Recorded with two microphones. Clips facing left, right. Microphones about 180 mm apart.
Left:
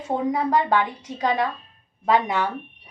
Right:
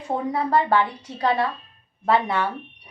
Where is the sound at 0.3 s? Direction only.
15° left (ahead or behind).